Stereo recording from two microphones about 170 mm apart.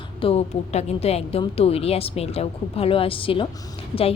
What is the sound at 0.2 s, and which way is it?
A woman's voice, 35° left (ahead or behind).